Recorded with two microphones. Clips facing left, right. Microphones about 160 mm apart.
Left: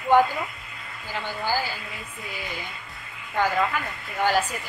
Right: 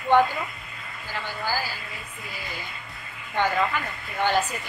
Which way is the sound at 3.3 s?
5° left (ahead or behind).